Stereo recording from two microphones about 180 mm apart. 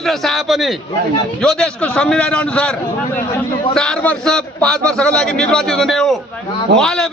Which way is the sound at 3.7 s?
5° left (ahead or behind).